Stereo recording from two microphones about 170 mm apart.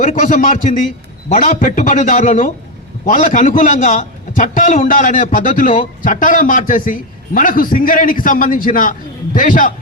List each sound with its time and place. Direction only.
0.0 s a man's voice: 50° left (ahead or behind)